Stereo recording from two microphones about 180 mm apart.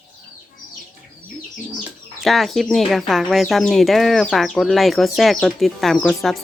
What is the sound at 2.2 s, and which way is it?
Speech, centre (ahead or behind).